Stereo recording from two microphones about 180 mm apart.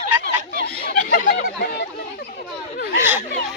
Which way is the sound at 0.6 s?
60° left (ahead or behind).